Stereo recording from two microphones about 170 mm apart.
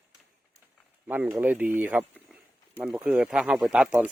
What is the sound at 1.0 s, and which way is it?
Speech, 10° right (ahead or behind).